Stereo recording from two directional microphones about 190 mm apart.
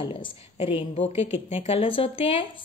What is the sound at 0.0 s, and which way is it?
A woman's voice, 25° left (ahead or behind).